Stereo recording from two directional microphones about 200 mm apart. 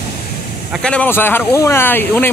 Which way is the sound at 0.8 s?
10° left (ahead or behind).